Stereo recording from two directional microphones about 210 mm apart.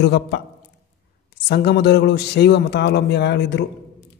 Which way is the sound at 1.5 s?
55° left (ahead or behind).